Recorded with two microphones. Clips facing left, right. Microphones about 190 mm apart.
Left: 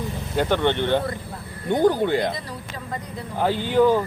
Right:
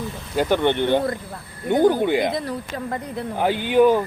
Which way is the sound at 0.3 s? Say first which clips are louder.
Right 2 dB; 10° right (ahead or behind).